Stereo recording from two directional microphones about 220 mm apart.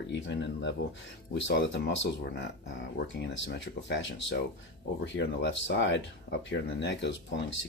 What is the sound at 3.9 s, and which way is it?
Speech, 55° left (ahead or behind).